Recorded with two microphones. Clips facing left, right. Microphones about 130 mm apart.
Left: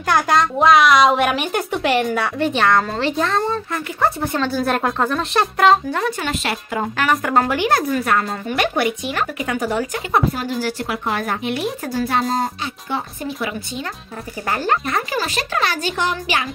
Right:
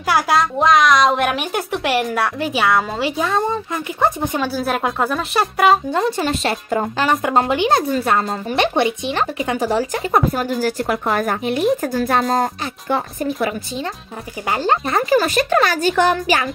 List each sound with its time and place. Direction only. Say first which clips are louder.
0.0 s speech: even; 5° right (ahead or behind)
5.9 s speech: right 3 dB; 25° right (ahead or behind)
6.2 s speech: right 3 dB; 35° right (ahead or behind)
14.5 s speech: right 2 dB; 20° right (ahead or behind)
14.9 s speech: right 5 dB; 35° right (ahead or behind)
15.1 s speech: right 7 dB; 50° right (ahead or behind)